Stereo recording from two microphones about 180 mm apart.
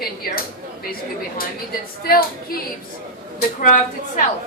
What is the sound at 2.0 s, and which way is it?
Speech, 55° left (ahead or behind).